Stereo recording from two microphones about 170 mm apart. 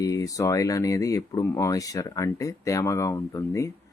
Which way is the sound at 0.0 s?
20° left (ahead or behind).